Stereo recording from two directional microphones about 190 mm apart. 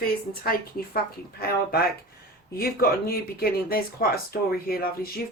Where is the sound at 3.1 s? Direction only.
50° left (ahead or behind).